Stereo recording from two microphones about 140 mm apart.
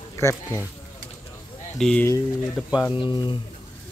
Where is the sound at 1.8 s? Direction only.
5° left (ahead or behind).